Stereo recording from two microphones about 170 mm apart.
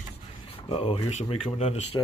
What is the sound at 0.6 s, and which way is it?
Speech, 30° left (ahead or behind).